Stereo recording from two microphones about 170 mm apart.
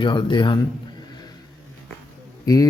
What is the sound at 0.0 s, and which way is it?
Speech, 30° left (ahead or behind).